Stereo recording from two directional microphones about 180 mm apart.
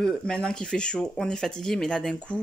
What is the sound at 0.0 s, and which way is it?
Speech, 5° left (ahead or behind).